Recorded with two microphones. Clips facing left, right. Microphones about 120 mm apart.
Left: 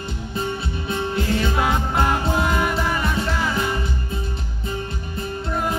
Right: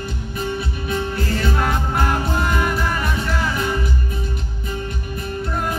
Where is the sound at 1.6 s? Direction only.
5° left (ahead or behind).